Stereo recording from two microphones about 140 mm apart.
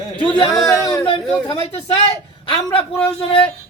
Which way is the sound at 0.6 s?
20° left (ahead or behind).